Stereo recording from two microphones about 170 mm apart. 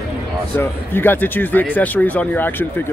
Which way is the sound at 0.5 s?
10° left (ahead or behind).